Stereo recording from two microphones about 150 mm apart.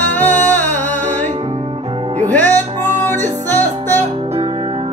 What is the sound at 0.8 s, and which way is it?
Music, 55° right (ahead or behind).